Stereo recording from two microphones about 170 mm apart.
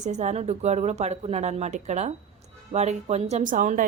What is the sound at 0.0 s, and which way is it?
A woman's voice, 45° right (ahead or behind).